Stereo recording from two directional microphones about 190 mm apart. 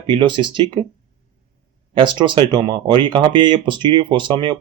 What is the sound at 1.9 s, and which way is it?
Speech, 25° right (ahead or behind).